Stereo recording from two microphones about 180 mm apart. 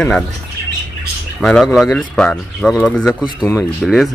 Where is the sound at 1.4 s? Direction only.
Centre (ahead or behind).